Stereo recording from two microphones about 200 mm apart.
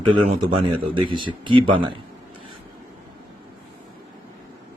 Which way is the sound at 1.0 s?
25° right (ahead or behind).